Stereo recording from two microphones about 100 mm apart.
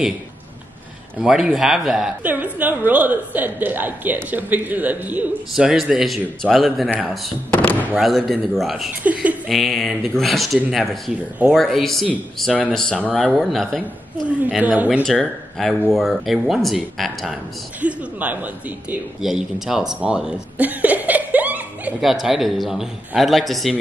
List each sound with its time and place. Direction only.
1.2 s a man's voice: 5° right (ahead or behind)
2.2 s a woman's voice: 15° right (ahead or behind)
5.5 s a man's voice: 5° right (ahead or behind)
7.5 s a sound: 15° left (ahead or behind)
8.0 s a man's voice: centre (ahead or behind)
9.0 s a woman's voice: 15° right (ahead or behind)
9.5 s a man's voice: centre (ahead or behind)
14.6 s a woman's voice: 15° right (ahead or behind)
15.0 s a man's voice: 5° left (ahead or behind)
17.7 s a woman's voice: 15° right (ahead or behind)
19.2 s chuckle: 5° right (ahead or behind)
22.0 s a man's voice: centre (ahead or behind)